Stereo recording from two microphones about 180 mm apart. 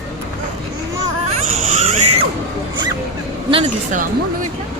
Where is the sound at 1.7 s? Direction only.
35° right (ahead or behind).